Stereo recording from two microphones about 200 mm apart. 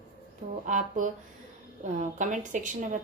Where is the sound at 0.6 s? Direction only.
40° right (ahead or behind).